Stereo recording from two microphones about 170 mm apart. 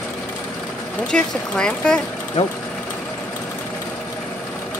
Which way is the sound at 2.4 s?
35° left (ahead or behind).